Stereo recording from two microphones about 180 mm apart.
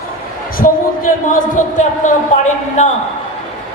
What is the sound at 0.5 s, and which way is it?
Speech, 50° left (ahead or behind).